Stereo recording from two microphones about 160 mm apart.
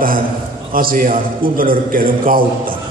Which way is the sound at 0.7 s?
60° right (ahead or behind).